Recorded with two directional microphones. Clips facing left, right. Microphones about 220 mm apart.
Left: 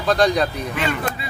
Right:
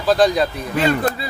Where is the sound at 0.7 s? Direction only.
35° right (ahead or behind).